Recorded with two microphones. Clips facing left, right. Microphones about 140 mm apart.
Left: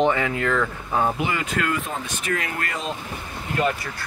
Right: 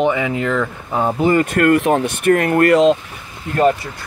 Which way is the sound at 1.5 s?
60° right (ahead or behind).